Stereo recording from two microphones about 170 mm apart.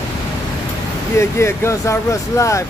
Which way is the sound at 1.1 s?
15° left (ahead or behind).